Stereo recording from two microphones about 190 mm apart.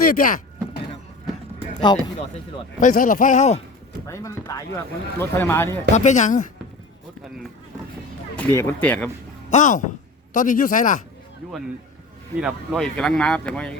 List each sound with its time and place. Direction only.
0.1 s speech: 45° left (ahead or behind)
1.5 s run: 25° left (ahead or behind)
2.8 s speech: 45° left (ahead or behind)
4.0 s speech: 15° left (ahead or behind)
5.9 s speech: 40° left (ahead or behind)
8.4 s speech: 10° left (ahead or behind)
9.5 s speech: 40° left (ahead or behind)
12.4 s speech: 5° right (ahead or behind)